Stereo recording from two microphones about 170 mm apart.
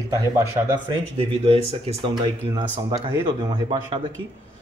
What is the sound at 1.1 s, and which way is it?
Speech, 35° right (ahead or behind).